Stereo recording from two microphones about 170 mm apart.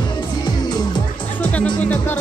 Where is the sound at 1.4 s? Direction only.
10° left (ahead or behind).